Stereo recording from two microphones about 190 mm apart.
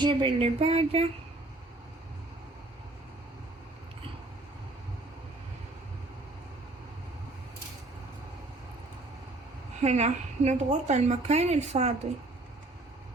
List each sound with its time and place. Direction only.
0.0 s a woman's voice: 30° right (ahead or behind)
9.8 s a woman's voice: 35° right (ahead or behind)